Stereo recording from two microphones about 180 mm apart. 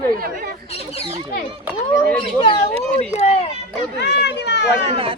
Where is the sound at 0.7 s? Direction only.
35° left (ahead or behind).